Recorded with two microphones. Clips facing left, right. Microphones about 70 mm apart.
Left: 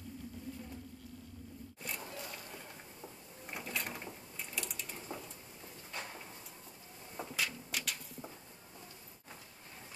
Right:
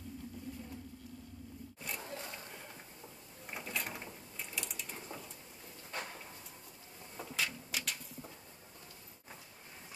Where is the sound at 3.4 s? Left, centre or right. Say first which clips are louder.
Even; centre.